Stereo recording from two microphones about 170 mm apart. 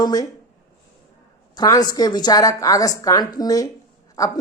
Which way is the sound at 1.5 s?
20° left (ahead or behind).